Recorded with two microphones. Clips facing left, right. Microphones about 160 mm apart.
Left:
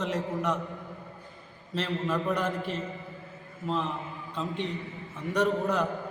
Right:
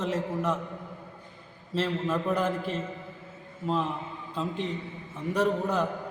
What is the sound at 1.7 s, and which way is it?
Speech, 5° right (ahead or behind).